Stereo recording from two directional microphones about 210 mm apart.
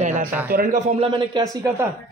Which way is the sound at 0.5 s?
40° right (ahead or behind).